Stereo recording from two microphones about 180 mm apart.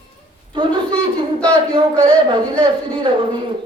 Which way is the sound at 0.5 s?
25° right (ahead or behind).